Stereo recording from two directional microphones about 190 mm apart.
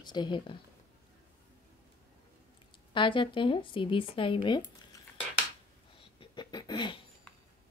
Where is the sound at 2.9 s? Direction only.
25° left (ahead or behind).